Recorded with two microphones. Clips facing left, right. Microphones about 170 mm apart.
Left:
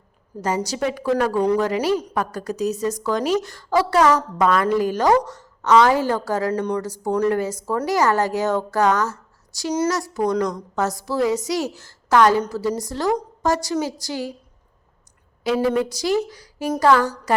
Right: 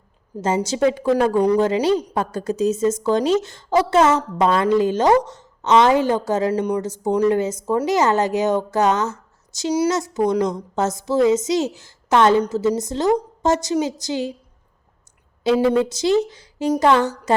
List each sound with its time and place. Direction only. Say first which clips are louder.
0.4 s a woman's voice: right 4 dB; 25° right (ahead or behind)
6.5 s speech: right 2 dB; 10° right (ahead or behind)
6.8 s a woman's voice: right 2 dB; 20° right (ahead or behind)
15.4 s a woman's voice: right 3 dB; 25° right (ahead or behind)